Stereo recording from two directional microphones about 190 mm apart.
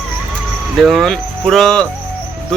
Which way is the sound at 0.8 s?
Centre (ahead or behind).